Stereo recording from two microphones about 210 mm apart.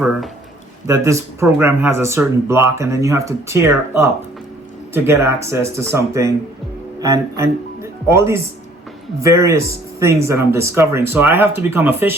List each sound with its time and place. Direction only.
0.0 s a man's voice: centre (ahead or behind)
0.9 s speech: 15° right (ahead or behind)